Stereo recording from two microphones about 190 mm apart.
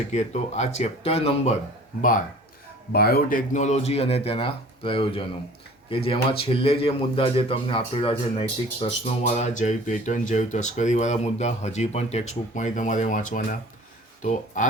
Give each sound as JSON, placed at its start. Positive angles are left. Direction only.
{"t": 0.1, "sound": "speech", "side_deg": 35}
{"t": 2.0, "sound": "speech", "side_deg": 45}